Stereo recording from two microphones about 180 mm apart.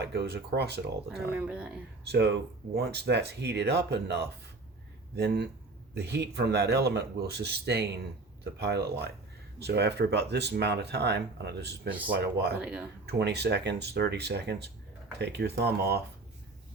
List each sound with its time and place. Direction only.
0.0 s speech: 65° right (ahead or behind)
1.3 s speech: 5° right (ahead or behind)
2.0 s speech: 70° right (ahead or behind)
12.5 s speech: 10° right (ahead or behind)
13.1 s speech: 65° right (ahead or behind)